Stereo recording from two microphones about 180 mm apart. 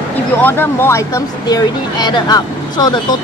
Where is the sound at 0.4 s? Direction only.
10° left (ahead or behind).